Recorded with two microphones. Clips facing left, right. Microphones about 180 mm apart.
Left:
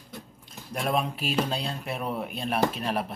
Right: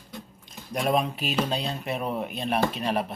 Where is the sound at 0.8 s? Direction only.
Centre (ahead or behind).